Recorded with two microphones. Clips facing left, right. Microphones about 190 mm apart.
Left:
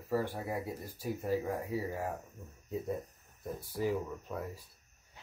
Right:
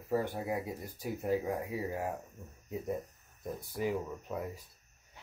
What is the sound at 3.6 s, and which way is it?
Speech, 15° right (ahead or behind).